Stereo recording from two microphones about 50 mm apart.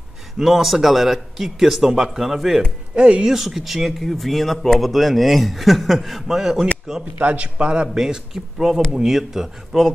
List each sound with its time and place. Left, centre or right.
0.4 s speech: centre
3.0 s a man's voice: right
3.3 s speech: centre
7.2 s a man's voice: right; by 9.8 s centre